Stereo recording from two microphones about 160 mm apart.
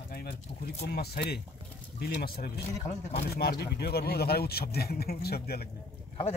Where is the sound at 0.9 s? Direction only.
85° left.